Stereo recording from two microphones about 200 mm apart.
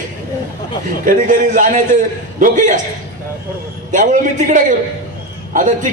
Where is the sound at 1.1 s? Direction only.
40° right (ahead or behind).